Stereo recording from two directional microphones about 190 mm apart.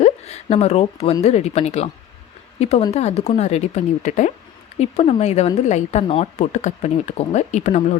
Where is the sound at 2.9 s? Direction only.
35° left (ahead or behind).